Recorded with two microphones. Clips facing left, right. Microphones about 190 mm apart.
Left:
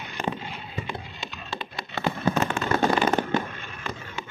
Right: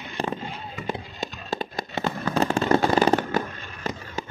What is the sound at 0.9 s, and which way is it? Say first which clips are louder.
Music: right 5 dB; 40° right (ahead or behind).